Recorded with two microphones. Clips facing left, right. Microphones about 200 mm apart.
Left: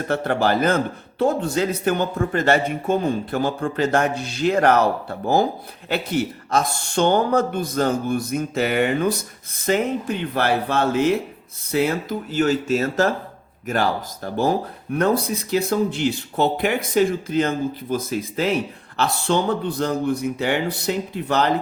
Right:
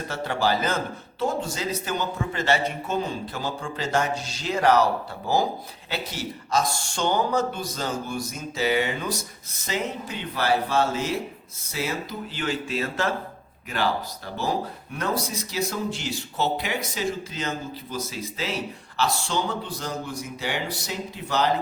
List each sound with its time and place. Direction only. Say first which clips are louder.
0.1 s speech: left 5 dB; 55° left (ahead or behind)